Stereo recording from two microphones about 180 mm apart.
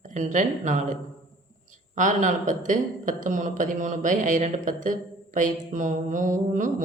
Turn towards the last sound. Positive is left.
turn(degrees=-45)  # may be behind; listen again after turning